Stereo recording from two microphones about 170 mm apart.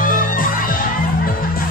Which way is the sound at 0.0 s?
55° left (ahead or behind).